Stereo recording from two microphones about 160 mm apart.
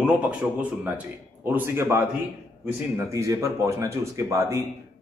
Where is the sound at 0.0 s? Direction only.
5° right (ahead or behind).